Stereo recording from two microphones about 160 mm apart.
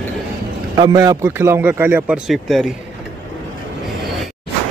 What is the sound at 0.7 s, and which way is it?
Speech, 25° right (ahead or behind).